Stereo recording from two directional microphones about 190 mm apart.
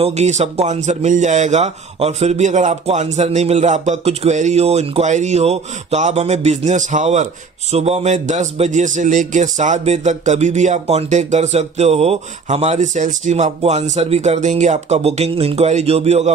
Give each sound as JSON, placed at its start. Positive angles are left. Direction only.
{"t": 0.0, "sound": "speech", "side_deg": -35}